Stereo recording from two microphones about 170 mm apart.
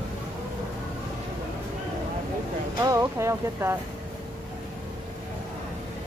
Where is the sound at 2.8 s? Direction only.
20° right (ahead or behind).